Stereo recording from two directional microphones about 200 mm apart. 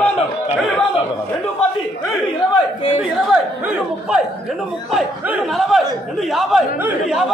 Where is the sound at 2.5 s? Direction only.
25° left (ahead or behind).